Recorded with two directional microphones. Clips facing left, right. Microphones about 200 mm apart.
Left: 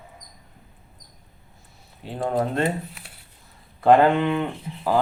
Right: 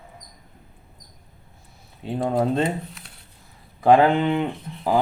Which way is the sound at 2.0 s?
20° right (ahead or behind).